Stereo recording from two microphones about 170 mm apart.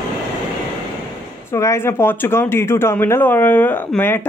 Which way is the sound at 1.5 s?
15° left (ahead or behind).